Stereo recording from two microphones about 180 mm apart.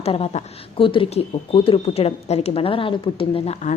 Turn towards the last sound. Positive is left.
turn(degrees=40)  # may be behind; listen again after turning